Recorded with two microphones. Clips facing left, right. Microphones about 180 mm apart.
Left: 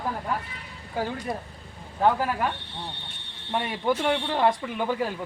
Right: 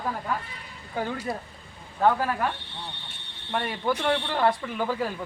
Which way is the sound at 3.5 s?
15° left (ahead or behind).